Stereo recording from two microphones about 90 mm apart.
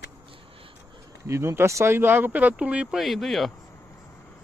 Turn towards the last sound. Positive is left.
turn(degrees=30)  # may be behind; listen again after turning